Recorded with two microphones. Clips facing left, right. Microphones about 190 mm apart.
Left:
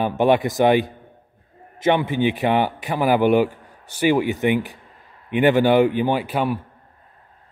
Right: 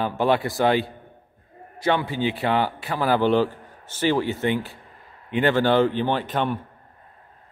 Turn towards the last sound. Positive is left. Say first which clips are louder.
# left 3 dB
turn(degrees=10)  # may be behind; listen again after turning